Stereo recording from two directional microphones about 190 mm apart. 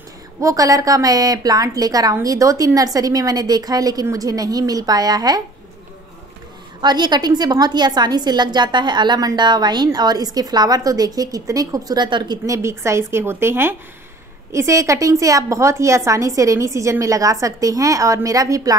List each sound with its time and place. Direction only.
0.4 s a woman's voice: 15° right (ahead or behind)
6.8 s a woman's voice: 20° right (ahead or behind)